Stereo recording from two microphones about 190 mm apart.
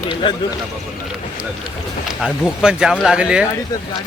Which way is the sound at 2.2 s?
Centre (ahead or behind).